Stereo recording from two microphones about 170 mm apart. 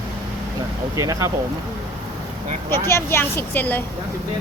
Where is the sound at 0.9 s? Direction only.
20° right (ahead or behind).